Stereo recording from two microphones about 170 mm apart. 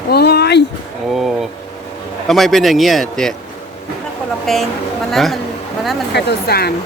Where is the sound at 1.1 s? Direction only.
Centre (ahead or behind).